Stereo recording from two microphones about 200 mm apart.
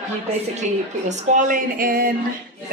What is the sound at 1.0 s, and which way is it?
Speech, 40° right (ahead or behind).